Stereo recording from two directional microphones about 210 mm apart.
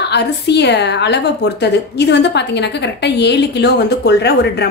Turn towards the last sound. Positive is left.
turn(degrees=50)  # may be behind; listen again after turning